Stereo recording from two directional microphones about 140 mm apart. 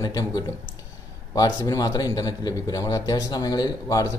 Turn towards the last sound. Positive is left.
turn(degrees=25)  # may be behind; listen again after turning